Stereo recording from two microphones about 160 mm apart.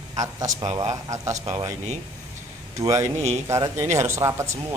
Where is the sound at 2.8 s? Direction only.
20° right (ahead or behind).